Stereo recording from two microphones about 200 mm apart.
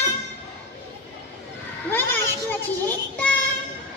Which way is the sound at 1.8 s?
10° left (ahead or behind).